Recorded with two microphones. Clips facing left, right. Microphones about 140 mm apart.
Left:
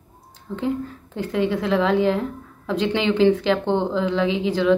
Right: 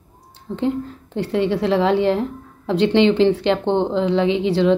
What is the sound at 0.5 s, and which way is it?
Speech, 30° right (ahead or behind).